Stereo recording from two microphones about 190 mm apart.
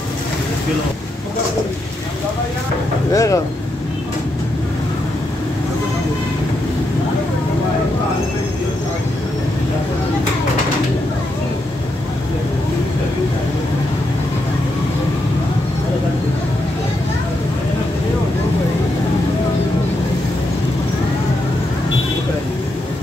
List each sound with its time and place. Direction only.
3.1 s speech: 15° left (ahead or behind)